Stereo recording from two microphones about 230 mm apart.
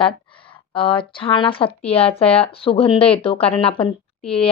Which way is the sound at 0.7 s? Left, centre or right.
Left.